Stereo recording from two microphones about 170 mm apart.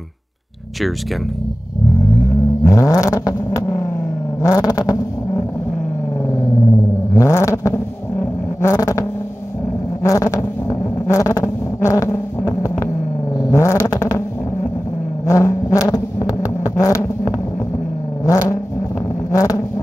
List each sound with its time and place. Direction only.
2.6 s vehicle: 20° left (ahead or behind)
7.2 s vehicle: 20° left (ahead or behind)
10.0 s vehicle: 20° left (ahead or behind)
15.2 s vehicle: 15° left (ahead or behind)
19.3 s vehicle: 20° left (ahead or behind)